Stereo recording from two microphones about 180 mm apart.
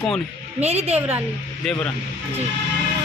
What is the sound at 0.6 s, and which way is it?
Speech, 35° right (ahead or behind).